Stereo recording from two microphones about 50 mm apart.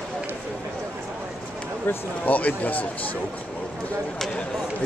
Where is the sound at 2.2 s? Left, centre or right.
Left.